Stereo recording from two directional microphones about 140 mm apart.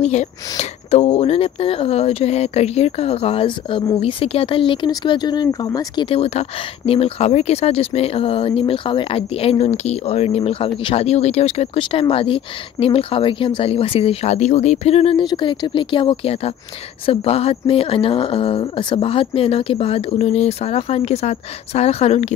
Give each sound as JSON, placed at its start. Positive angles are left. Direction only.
{"t": 0.0, "sound": "speech", "side_deg": 50}
{"t": 6.0, "sound": "speech", "side_deg": 45}